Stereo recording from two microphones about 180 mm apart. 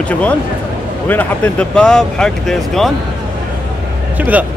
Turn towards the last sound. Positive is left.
turn(degrees=-10)  # may be behind; listen again after turning